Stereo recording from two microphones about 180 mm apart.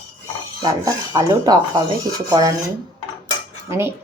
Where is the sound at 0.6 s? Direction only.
20° right (ahead or behind).